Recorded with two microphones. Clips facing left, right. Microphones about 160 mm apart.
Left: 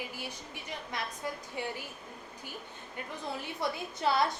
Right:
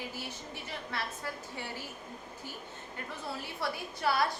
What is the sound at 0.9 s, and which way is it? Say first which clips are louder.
Speech: left 2 dB; 15° left (ahead or behind).